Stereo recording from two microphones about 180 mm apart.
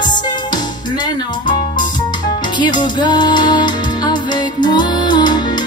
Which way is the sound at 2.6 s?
25° left (ahead or behind).